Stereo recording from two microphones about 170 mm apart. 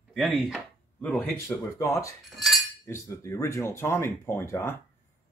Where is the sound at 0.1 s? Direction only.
Centre (ahead or behind).